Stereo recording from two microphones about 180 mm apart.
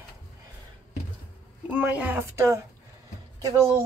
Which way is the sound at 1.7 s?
5° right (ahead or behind).